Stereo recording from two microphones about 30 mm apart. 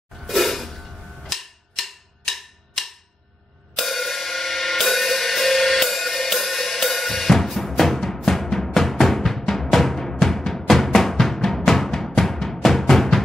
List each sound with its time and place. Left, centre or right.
0.2 s a sound: centre
3.7 s music: centre
11.9 s music: centre
12.6 s drum: centre